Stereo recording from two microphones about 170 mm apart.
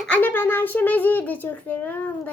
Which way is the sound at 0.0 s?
10° left (ahead or behind).